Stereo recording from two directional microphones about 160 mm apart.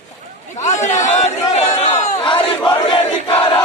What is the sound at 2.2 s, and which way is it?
Battle cry, 35° left (ahead or behind).